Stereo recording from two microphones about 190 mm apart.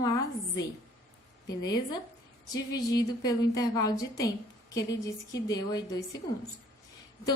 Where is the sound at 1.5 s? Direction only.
20° left (ahead or behind).